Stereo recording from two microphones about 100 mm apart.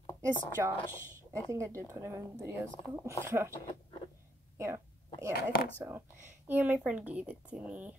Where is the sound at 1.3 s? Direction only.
30° right (ahead or behind).